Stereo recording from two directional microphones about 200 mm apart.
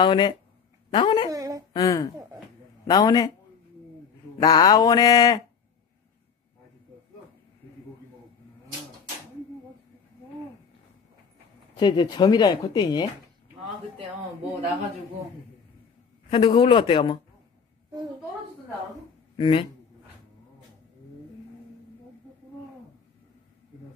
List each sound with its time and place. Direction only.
0.0 s speech: 25° left (ahead or behind)
1.3 s a sound: 15° right (ahead or behind)
1.7 s speech: 15° left (ahead or behind)
4.4 s speech: 20° left (ahead or behind)
11.7 s speech: 20° left (ahead or behind)
16.3 s speech: 25° left (ahead or behind)
19.3 s speech: 25° left (ahead or behind)